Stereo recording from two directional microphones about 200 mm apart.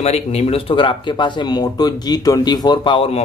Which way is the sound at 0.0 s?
35° left (ahead or behind).